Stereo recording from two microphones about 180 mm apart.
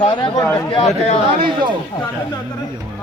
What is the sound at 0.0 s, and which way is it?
Speech, 25° left (ahead or behind).